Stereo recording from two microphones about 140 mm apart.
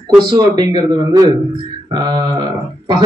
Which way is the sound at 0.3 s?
30° right (ahead or behind).